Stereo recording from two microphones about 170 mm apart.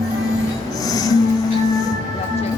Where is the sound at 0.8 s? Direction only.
20° left (ahead or behind).